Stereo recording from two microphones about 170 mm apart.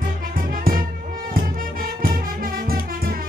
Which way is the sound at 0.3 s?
55° right (ahead or behind).